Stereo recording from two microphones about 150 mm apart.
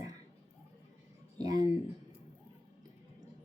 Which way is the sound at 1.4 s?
25° right (ahead or behind).